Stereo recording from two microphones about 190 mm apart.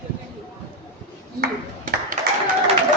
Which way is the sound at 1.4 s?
45° right (ahead or behind).